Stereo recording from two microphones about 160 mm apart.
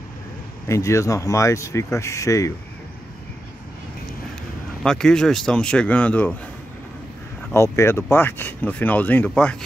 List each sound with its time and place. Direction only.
0.7 s speech: 20° left (ahead or behind)
4.8 s speech: 5° left (ahead or behind)
7.5 s speech: 15° left (ahead or behind)